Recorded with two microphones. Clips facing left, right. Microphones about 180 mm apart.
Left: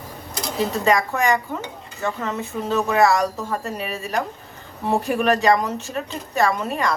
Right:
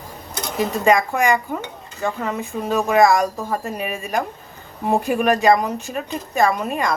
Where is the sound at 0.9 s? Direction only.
15° right (ahead or behind).